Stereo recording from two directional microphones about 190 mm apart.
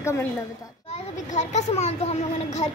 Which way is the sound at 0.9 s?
35° left (ahead or behind).